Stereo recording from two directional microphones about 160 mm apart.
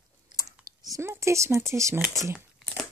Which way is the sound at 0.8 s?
20° right (ahead or behind).